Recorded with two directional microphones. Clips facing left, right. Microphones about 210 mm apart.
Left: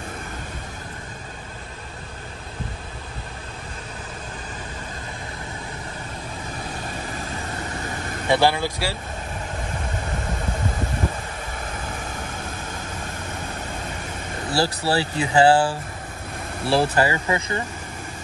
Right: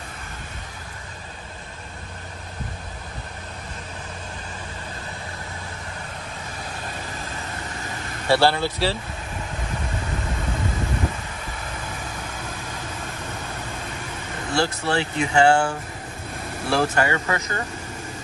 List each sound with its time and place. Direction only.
8.3 s speech: 15° left (ahead or behind)
14.5 s speech: 35° left (ahead or behind)
16.7 s speech: 35° left (ahead or behind)